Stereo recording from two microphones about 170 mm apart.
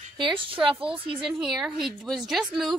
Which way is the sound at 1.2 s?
5° right (ahead or behind).